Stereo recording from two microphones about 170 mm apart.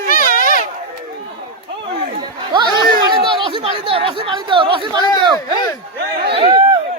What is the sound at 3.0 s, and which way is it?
Chatter, 30° right (ahead or behind).